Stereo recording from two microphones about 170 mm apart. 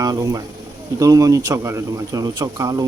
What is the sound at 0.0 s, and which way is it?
Speech, 20° right (ahead or behind).